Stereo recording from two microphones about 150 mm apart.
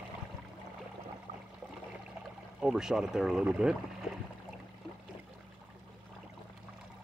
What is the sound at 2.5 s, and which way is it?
Speech, 5° right (ahead or behind).